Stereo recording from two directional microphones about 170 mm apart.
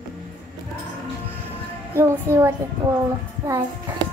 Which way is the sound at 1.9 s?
15° right (ahead or behind).